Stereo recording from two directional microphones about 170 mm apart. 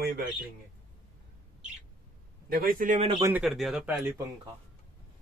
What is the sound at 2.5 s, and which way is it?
Speech, 60° right (ahead or behind).